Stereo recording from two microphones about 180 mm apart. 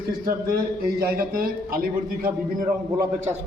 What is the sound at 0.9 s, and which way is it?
A man's voice, 60° right (ahead or behind).